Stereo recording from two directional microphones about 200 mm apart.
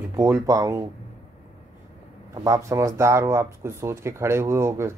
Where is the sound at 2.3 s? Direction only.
15° right (ahead or behind).